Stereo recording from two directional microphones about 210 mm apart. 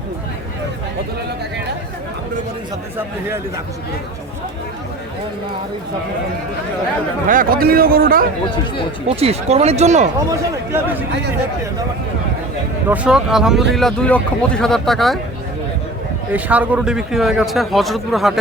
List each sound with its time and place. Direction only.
7.3 s a man's voice: 40° right (ahead or behind)
9.0 s speech: 30° right (ahead or behind)
10.2 s speech: 15° right (ahead or behind)
12.9 s a man's voice: 5° right (ahead or behind)
16.3 s a man's voice: 5° right (ahead or behind)